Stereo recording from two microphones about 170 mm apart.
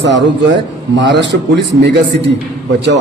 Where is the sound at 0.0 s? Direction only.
90° right.